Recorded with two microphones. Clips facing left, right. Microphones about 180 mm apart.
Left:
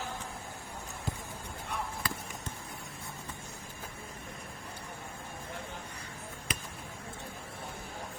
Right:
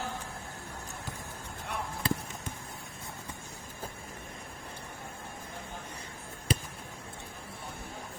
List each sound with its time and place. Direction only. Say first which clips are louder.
2.0 s basketball bounce: right 6 dB; 25° right (ahead or behind)
6.5 s basketball bounce: right 9 dB; 30° right (ahead or behind)